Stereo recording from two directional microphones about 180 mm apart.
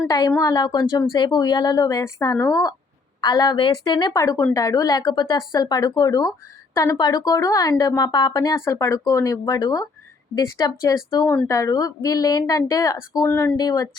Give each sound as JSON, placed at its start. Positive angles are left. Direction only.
{"t": 0.1, "sound": "speech", "side_deg": 20}